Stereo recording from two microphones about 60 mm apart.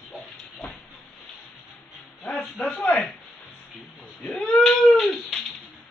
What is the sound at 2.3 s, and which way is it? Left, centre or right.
Speech, centre.